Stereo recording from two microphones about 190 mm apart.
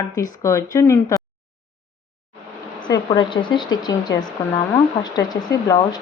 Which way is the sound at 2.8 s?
20° left (ahead or behind).